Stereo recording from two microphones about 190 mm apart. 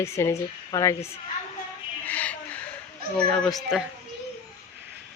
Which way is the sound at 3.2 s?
5° left (ahead or behind).